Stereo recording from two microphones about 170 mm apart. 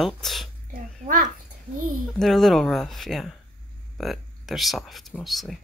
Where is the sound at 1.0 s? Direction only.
50° right (ahead or behind).